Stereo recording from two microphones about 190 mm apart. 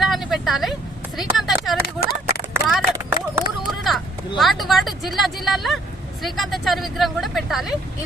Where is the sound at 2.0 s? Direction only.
55° left (ahead or behind).